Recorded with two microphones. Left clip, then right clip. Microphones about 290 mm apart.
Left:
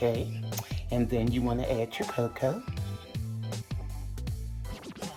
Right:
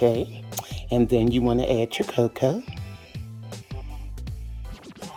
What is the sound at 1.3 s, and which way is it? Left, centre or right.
Speech, right.